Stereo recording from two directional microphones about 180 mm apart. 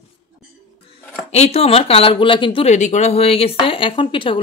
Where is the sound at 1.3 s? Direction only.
35° left (ahead or behind).